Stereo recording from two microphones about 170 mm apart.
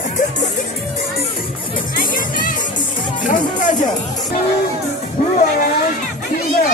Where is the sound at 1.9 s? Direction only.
55° left (ahead or behind).